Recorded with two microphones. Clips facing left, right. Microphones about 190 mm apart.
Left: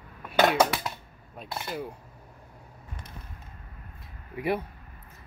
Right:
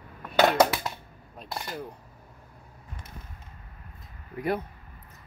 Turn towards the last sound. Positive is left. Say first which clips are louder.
# even
turn(degrees=5)  # may be behind; listen again after turning